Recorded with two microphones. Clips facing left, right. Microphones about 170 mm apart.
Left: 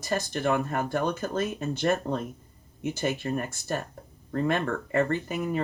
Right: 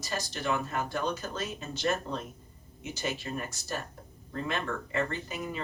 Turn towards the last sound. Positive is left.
turn(degrees=55)  # may be behind; listen again after turning